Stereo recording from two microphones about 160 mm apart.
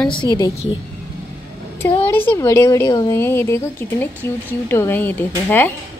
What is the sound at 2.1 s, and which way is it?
A woman's voice, 15° left (ahead or behind).